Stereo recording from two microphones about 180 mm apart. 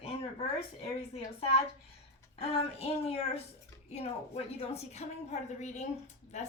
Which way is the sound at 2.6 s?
35° left (ahead or behind).